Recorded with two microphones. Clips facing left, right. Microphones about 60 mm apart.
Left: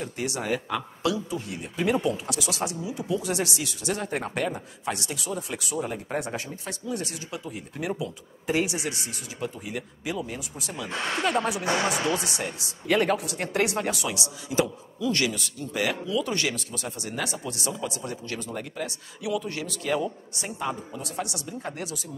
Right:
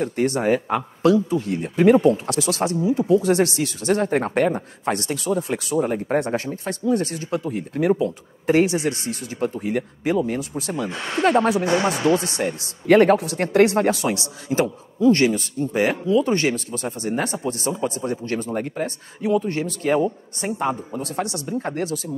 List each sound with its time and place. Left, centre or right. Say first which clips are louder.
0.0 s a man's voice: right 10 dB; right
10.9 s speech: right 3 dB; centre
11.3 s a man's voice: right 7 dB; right